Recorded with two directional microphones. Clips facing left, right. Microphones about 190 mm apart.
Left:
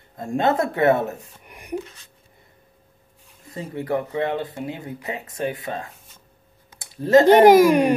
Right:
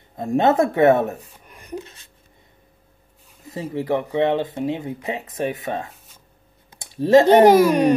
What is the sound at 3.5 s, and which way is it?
Speech, 25° right (ahead or behind).